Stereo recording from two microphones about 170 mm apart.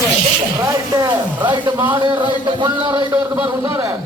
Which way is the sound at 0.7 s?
25° right (ahead or behind).